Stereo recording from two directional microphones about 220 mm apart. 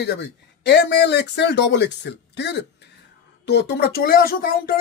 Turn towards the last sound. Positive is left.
turn(degrees=40)  # may be behind; listen again after turning